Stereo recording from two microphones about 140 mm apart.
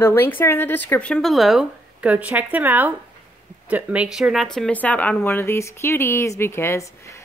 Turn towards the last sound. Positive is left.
turn(degrees=15)  # may be behind; listen again after turning